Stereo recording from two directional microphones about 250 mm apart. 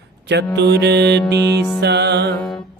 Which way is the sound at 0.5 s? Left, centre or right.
Right.